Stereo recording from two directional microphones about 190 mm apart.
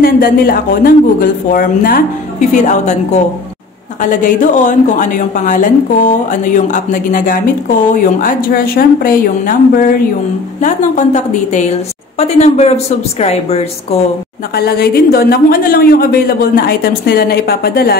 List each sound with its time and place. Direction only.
0.0 s a woman's voice: 50° left (ahead or behind)
4.2 s a woman's voice: 40° left (ahead or behind)
14.5 s a woman's voice: 55° left (ahead or behind)